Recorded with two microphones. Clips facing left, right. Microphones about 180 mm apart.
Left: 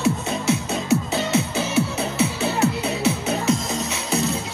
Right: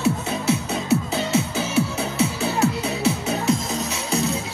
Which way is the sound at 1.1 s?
Centre (ahead or behind).